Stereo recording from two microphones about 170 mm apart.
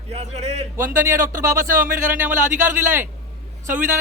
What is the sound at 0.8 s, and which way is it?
A man's voice, 15° right (ahead or behind).